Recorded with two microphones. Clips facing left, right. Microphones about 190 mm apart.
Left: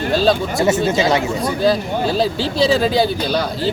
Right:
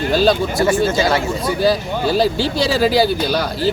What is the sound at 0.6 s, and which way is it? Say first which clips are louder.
Speech: even; 20° left (ahead or behind).